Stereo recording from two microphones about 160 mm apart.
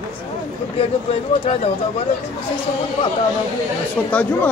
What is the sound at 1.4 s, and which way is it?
Speech, 35° left (ahead or behind).